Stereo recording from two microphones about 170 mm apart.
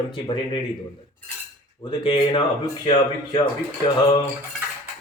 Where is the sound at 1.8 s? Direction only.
25° left (ahead or behind).